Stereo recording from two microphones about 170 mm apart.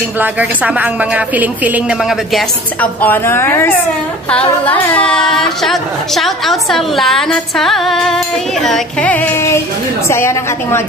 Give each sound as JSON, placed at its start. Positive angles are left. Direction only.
{"t": 0.2, "sound": "a woman's voice", "side_deg": -10}
{"t": 2.8, "sound": "a woman's voice", "side_deg": 10}